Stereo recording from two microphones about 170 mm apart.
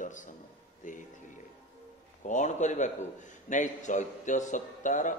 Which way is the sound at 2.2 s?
45° left (ahead or behind).